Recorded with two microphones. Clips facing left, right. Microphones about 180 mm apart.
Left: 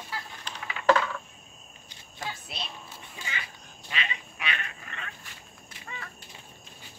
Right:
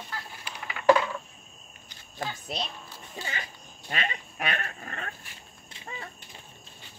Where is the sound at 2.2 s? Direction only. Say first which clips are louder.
Right 4 dB; 40° right (ahead or behind).